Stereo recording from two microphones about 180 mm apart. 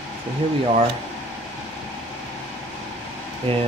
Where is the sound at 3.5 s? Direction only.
30° right (ahead or behind).